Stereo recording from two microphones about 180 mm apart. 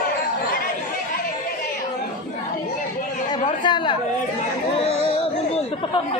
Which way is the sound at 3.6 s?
25° left (ahead or behind).